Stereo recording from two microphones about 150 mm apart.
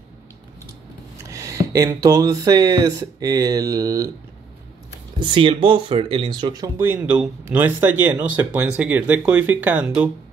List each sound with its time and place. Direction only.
1.3 s speech: 20° right (ahead or behind)
5.2 s speech: 35° right (ahead or behind)
6.9 s speech: 10° right (ahead or behind)